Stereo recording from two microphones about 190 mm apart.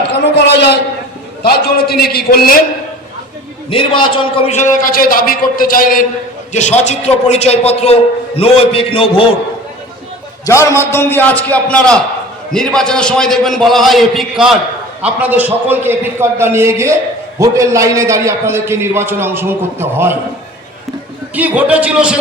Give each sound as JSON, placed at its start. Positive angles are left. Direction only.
{"t": 0.1, "sound": "a sound", "side_deg": 60}
{"t": 1.4, "sound": "a man's voice", "side_deg": 55}
{"t": 3.7, "sound": "a man's voice", "side_deg": 25}
{"t": 6.5, "sound": "a man's voice", "side_deg": 35}
{"t": 10.4, "sound": "a man's voice", "side_deg": 15}
{"t": 21.3, "sound": "a man's voice", "side_deg": -10}